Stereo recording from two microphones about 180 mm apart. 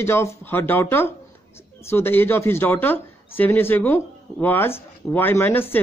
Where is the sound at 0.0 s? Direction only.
15° left (ahead or behind).